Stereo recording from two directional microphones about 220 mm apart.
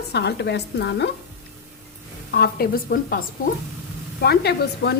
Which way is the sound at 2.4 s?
45° left (ahead or behind).